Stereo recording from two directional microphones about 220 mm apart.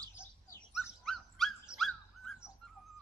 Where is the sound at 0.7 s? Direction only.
Centre (ahead or behind).